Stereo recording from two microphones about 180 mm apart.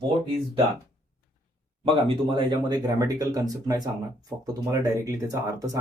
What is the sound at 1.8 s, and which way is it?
Speech, 30° right (ahead or behind).